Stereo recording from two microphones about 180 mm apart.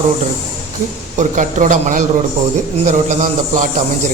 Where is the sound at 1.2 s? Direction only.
45° right (ahead or behind).